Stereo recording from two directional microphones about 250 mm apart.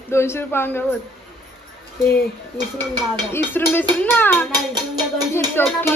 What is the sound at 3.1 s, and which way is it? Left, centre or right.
Speech, centre.